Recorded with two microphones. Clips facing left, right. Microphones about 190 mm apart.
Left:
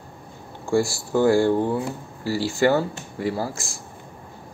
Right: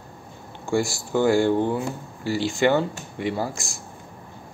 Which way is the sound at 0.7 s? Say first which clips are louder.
Left 2 dB; 30° left (ahead or behind).